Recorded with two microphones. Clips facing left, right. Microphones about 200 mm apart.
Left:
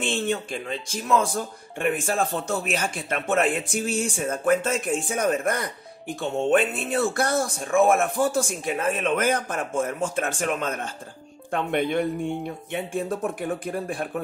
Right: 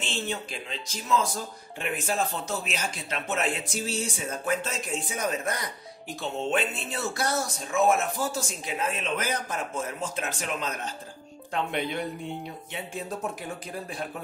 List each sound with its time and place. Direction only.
0.0 s speech: 50° left (ahead or behind)